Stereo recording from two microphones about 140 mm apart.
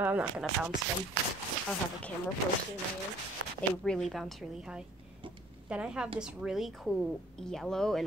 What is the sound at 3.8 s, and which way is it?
Speech, centre (ahead or behind).